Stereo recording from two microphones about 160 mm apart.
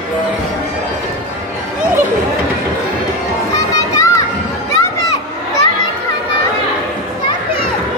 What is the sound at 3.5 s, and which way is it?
Children playing, 20° left (ahead or behind).